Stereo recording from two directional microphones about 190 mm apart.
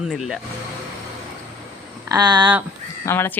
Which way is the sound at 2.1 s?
20° right (ahead or behind).